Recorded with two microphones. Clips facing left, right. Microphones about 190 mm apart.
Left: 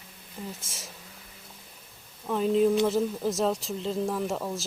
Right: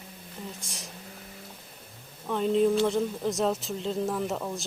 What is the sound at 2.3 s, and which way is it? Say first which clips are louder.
Speech: left 1 dB; 5° left (ahead or behind).